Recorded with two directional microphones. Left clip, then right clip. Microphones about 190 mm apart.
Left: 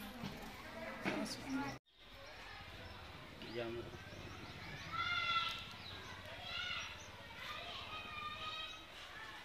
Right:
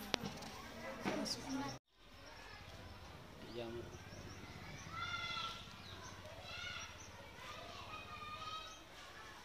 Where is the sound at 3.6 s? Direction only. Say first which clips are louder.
Left 4 dB; 25° left (ahead or behind).